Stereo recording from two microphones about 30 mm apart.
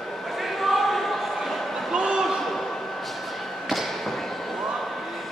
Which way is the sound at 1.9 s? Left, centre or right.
Right.